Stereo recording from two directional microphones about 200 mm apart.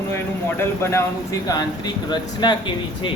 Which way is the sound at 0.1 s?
10° left (ahead or behind).